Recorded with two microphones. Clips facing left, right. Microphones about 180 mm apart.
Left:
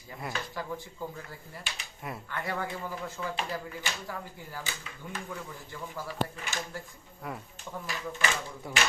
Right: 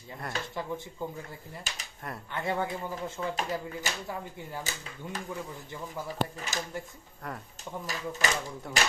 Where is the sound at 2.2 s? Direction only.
25° right (ahead or behind).